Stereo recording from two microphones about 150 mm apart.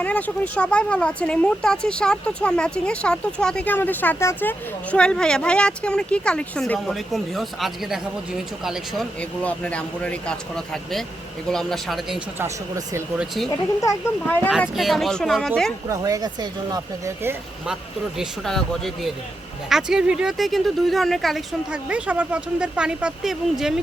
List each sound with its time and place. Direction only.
0.0 s speech: 10° left (ahead or behind)
9.4 s speech: 10° left (ahead or behind)
12.4 s speech: 20° right (ahead or behind)
13.1 s speech: centre (ahead or behind)
13.8 s speech: 15° left (ahead or behind)
14.8 s speech: centre (ahead or behind)
15.9 s speech: 25° right (ahead or behind)
18.2 s speech: 5° left (ahead or behind)